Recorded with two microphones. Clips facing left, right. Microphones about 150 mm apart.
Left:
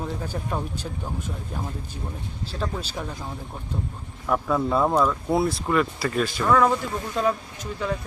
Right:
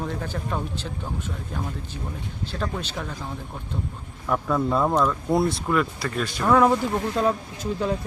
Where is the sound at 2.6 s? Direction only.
10° left (ahead or behind).